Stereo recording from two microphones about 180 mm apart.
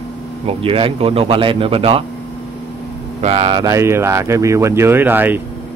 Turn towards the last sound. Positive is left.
turn(degrees=-10)  # may be behind; listen again after turning